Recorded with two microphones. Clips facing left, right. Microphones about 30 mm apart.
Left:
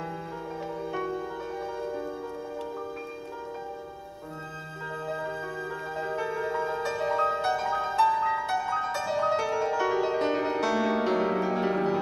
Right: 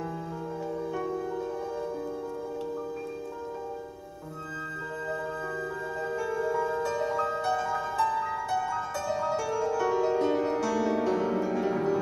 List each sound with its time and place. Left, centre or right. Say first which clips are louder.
5.9 s music: left 1 dB; left